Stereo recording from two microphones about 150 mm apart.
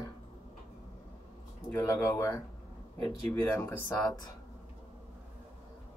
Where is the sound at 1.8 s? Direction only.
20° left (ahead or behind).